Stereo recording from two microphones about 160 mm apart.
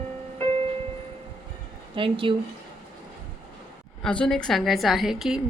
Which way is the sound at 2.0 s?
35° right (ahead or behind).